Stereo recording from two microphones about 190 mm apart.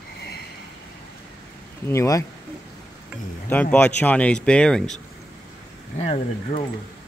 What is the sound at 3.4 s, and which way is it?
Speech, 10° left (ahead or behind).